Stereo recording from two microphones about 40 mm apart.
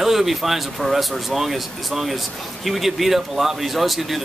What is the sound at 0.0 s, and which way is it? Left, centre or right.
Speech, centre.